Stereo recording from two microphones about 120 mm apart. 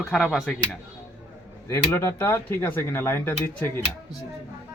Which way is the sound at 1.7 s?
25° left (ahead or behind).